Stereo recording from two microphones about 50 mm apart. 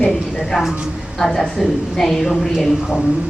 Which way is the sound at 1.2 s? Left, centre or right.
Centre.